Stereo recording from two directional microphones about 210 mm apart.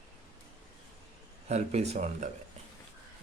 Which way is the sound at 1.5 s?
30° right (ahead or behind).